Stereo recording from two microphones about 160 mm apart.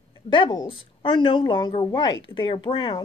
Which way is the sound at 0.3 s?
30° left (ahead or behind).